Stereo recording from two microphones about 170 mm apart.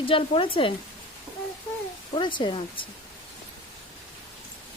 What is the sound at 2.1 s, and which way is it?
Speech, 30° left (ahead or behind).